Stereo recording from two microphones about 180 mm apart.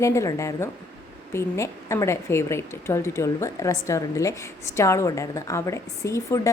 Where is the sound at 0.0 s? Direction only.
15° left (ahead or behind).